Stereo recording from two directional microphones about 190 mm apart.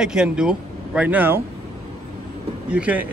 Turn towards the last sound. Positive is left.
turn(degrees=-5)  # may be behind; listen again after turning